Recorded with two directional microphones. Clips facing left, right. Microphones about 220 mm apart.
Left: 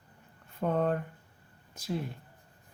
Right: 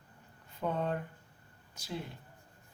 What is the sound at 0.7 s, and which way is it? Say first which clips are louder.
Speech: left 6 dB; 50° left (ahead or behind).